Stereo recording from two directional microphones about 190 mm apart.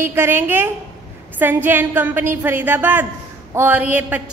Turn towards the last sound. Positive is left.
turn(degrees=-10)  # may be behind; listen again after turning